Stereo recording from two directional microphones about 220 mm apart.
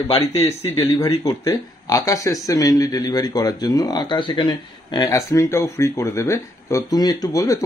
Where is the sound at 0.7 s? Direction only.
20° left (ahead or behind).